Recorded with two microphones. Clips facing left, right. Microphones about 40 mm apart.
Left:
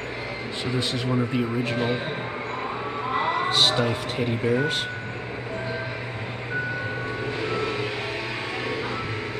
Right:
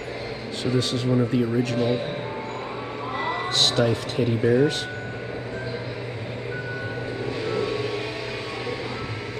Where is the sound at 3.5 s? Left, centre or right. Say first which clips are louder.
Right 1 dB; left.